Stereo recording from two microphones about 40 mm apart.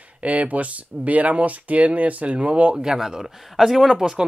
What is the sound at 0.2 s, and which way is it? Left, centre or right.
Speech, right.